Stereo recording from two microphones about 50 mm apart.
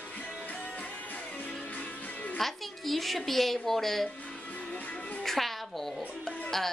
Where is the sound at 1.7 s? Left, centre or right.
Left.